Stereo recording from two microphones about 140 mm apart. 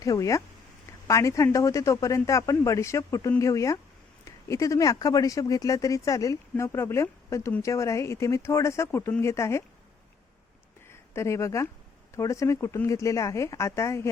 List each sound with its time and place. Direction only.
0.0 s speech: 25° left (ahead or behind)
10.8 s speech: 20° left (ahead or behind)